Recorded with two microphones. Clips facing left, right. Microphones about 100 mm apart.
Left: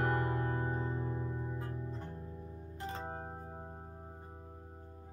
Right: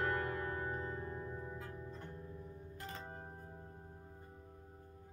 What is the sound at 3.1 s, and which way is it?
Organ, 55° left (ahead or behind).